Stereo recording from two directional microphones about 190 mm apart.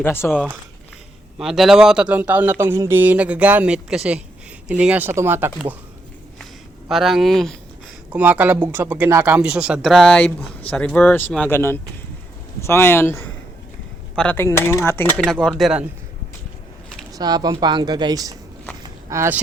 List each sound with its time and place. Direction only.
0.0 s speech: 10° left (ahead or behind)
1.4 s speech: centre (ahead or behind)
6.4 s a sound: centre (ahead or behind)
8.1 s speech: 10° right (ahead or behind)
17.1 s speech: 20° right (ahead or behind)
18.8 s a sound: 15° right (ahead or behind)